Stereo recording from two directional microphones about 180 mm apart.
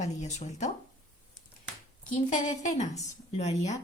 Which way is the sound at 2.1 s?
40° left (ahead or behind).